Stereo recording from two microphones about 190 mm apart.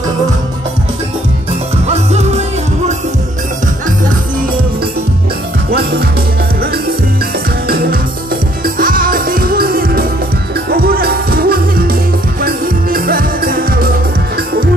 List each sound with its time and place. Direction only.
1.9 s music: 35° right (ahead or behind)
5.7 s music: 55° right (ahead or behind)
7.6 s music: 55° right (ahead or behind)